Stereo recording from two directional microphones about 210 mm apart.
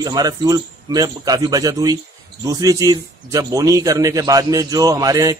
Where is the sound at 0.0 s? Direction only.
20° right (ahead or behind).